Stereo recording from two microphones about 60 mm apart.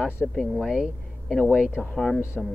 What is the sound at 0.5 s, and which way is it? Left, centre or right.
Speech, centre.